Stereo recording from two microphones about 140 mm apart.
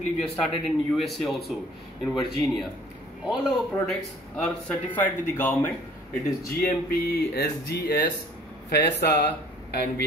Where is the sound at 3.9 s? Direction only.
5° left (ahead or behind).